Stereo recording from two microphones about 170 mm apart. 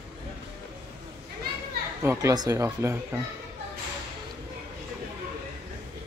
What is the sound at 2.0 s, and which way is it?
Speech, 15° right (ahead or behind).